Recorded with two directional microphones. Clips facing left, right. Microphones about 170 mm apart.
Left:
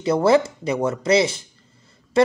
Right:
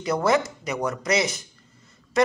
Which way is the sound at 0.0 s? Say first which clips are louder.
Left 5 dB; 30° left (ahead or behind).